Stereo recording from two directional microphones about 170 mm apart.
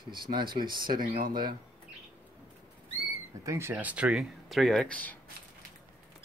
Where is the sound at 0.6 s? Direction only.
55° right (ahead or behind).